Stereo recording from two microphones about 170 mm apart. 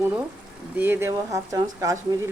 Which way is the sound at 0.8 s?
15° right (ahead or behind).